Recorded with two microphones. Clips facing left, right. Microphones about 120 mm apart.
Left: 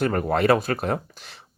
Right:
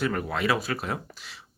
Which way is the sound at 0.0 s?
50° left (ahead or behind).